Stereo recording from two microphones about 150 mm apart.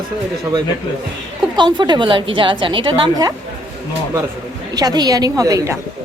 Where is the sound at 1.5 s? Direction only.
30° right (ahead or behind).